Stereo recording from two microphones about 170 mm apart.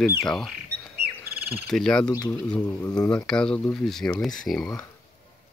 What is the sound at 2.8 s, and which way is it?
Speech, 20° left (ahead or behind).